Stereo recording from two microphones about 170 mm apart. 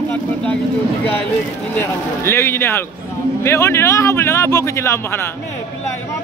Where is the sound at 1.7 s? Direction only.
15° left (ahead or behind).